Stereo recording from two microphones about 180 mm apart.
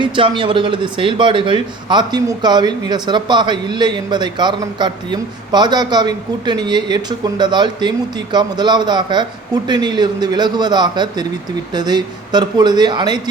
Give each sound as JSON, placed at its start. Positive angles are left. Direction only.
{"t": 0.0, "sound": "speech", "side_deg": -25}